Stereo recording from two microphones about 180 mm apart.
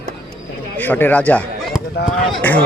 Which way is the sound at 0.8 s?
10° left (ahead or behind).